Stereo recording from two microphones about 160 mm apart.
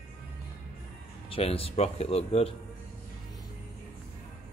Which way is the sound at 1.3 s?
35° left (ahead or behind).